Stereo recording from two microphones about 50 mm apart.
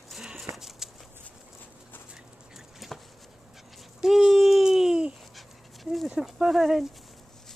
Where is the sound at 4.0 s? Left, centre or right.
Centre.